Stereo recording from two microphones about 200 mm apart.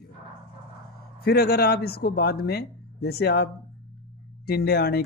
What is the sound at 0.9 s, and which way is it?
Speech, 50° left (ahead or behind).